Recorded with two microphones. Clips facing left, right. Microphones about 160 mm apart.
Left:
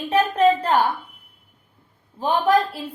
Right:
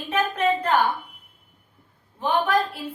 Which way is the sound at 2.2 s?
35° left (ahead or behind).